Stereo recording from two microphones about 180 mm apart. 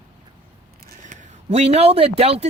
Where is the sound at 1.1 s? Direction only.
35° right (ahead or behind).